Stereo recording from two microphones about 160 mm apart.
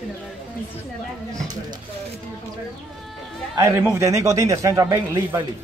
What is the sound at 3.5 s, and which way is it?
Speech, 15° right (ahead or behind).